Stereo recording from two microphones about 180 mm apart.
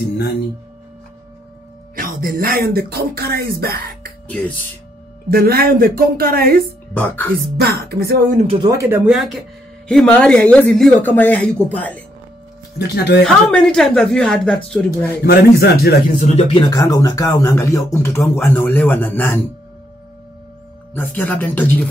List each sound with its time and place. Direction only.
2.0 s speech: 50° right (ahead or behind)
5.3 s speech: 60° right (ahead or behind)
6.9 s speech: 10° left (ahead or behind)
7.6 s speech: 60° right (ahead or behind)
8.5 s speech: 25° right (ahead or behind); by 12.0 s 10° left (ahead or behind)
12.7 s speech: 65° left (ahead or behind)
13.2 s speech: 5° left (ahead or behind)
15.2 s speech: 60° left (ahead or behind)
16.3 s speech: 25° left (ahead or behind)
20.9 s speech: 10° left (ahead or behind)